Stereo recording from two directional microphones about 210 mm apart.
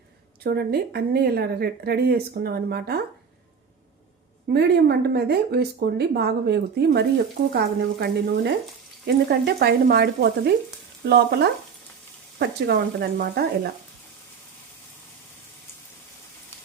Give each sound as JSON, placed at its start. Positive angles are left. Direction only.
{"t": 0.4, "sound": "a woman's voice", "side_deg": -45}
{"t": 4.4, "sound": "a woman's voice", "side_deg": -50}
{"t": 12.4, "sound": "a woman's voice", "side_deg": -50}